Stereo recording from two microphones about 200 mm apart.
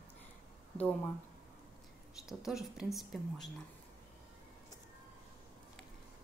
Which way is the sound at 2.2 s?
Centre (ahead or behind).